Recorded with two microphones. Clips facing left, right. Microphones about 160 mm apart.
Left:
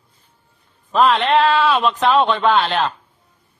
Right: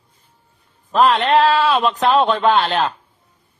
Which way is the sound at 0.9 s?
Centre (ahead or behind).